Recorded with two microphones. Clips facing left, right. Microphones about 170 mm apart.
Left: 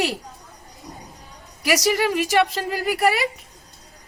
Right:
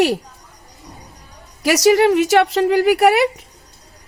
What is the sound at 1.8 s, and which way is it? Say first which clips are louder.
Speech: right 12 dB; 75° right (ahead or behind).